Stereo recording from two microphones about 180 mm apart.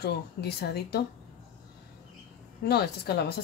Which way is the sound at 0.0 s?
65° left (ahead or behind).